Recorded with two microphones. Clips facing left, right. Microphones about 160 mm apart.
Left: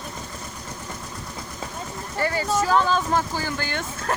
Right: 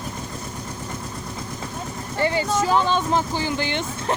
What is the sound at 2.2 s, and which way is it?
Speech, 25° right (ahead or behind).